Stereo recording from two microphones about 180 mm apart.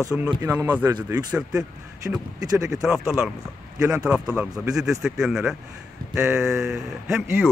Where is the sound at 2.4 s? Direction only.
20° right (ahead or behind).